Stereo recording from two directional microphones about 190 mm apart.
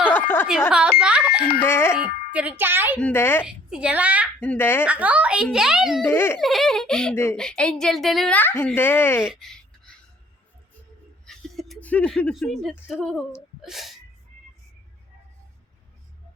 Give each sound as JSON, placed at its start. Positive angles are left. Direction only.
{"t": 0.1, "sound": "a sound", "side_deg": 10}
{"t": 0.7, "sound": "speech", "side_deg": -5}
{"t": 1.4, "sound": "speech", "side_deg": 55}
{"t": 1.6, "sound": "a woman's voice", "side_deg": 10}
{"t": 2.0, "sound": "speech", "side_deg": -5}
{"t": 3.0, "sound": "a woman's voice", "side_deg": 10}
{"t": 3.4, "sound": "speech", "side_deg": -5}
{"t": 4.4, "sound": "a woman's voice", "side_deg": 10}
{"t": 4.9, "sound": "a child's voice", "side_deg": -5}
{"t": 6.1, "sound": "a woman's voice", "side_deg": 10}
{"t": 6.4, "sound": "a child's voice", "side_deg": 0}
{"t": 9.2, "sound": "a sound", "side_deg": 0}
{"t": 11.3, "sound": "a sound", "side_deg": 0}
{"t": 12.9, "sound": "a child's voice", "side_deg": 0}